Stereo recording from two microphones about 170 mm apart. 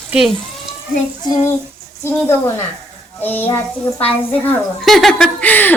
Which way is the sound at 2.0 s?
15° left (ahead or behind).